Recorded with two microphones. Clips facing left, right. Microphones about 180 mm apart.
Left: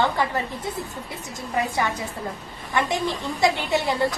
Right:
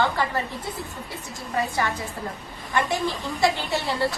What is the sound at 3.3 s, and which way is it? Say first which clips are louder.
Speech: left 2 dB; 20° left (ahead or behind).